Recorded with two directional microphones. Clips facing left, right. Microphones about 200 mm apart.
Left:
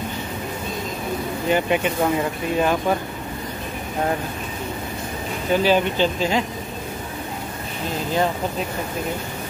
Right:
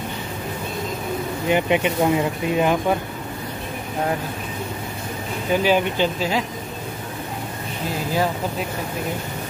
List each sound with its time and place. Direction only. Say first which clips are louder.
1.5 s speech: right 1 dB; 15° right (ahead or behind)
5.5 s speech: left 1 dB; 15° right (ahead or behind)